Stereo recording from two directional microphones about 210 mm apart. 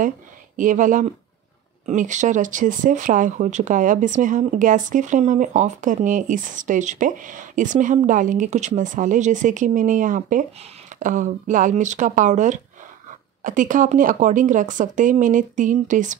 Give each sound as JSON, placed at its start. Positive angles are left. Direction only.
{"t": 0.6, "sound": "speech", "side_deg": -40}